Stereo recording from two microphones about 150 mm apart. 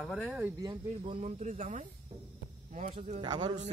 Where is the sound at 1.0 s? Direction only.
40° right (ahead or behind).